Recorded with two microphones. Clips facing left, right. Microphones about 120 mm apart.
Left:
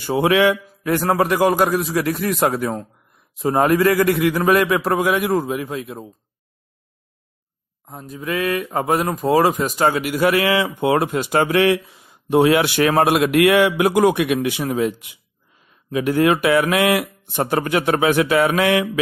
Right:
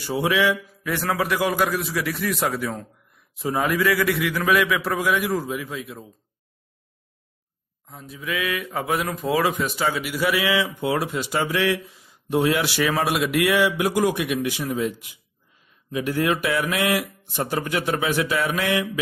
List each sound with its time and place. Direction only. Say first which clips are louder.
0.0 s speech: left 6 dB; 60° left (ahead or behind)
0.8 s a man's voice: left 6 dB; 45° left (ahead or behind)
3.4 s a man's voice: left 6 dB; 45° left (ahead or behind)
7.8 s a man's voice: left 5 dB; 45° left (ahead or behind); by 14.9 s 65° left (ahead or behind)
15.9 s speech: left 6 dB; 70° left (ahead or behind)